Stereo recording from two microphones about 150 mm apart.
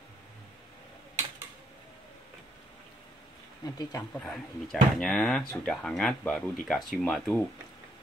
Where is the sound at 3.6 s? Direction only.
25° left (ahead or behind).